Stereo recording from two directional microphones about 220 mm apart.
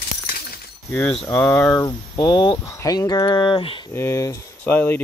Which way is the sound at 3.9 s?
10° left (ahead or behind).